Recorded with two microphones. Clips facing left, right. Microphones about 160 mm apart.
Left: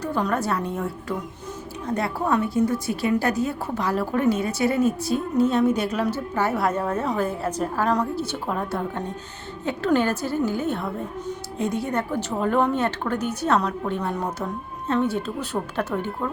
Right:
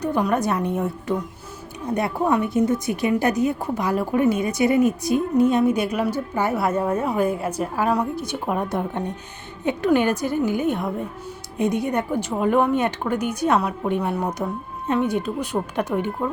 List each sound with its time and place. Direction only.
0.0 s a woman's voice: 15° right (ahead or behind)